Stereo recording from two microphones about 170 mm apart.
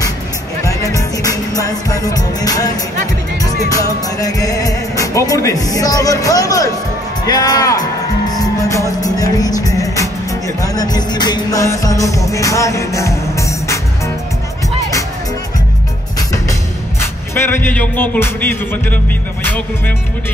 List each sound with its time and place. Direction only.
0.7 s music: 20° left (ahead or behind)
17.0 s music: 15° left (ahead or behind)